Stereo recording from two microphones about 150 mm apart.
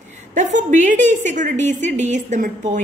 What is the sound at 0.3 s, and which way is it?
A woman's voice, 55° right (ahead or behind).